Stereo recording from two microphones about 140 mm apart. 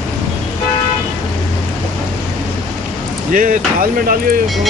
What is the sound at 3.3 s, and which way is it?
Speech, 70° right (ahead or behind).